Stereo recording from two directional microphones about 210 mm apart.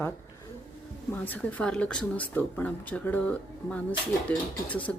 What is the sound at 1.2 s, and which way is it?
Speech, 10° left (ahead or behind).